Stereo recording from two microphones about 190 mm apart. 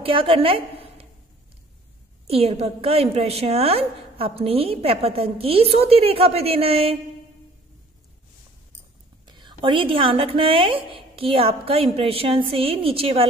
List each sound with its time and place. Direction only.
0.0 s a woman's voice: 25° right (ahead or behind)
2.2 s a woman's voice: 30° right (ahead or behind)
9.3 s a woman's voice: 25° right (ahead or behind)